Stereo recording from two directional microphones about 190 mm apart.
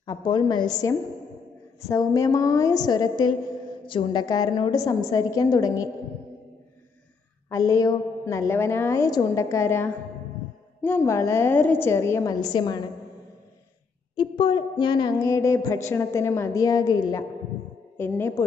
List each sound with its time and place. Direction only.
0.0 s a woman's voice: 20° left (ahead or behind)
1.9 s a woman's voice: 15° left (ahead or behind)
7.4 s a woman's voice: 15° left (ahead or behind)
14.1 s a sound: 25° left (ahead or behind)
15.9 s a woman's voice: 15° left (ahead or behind)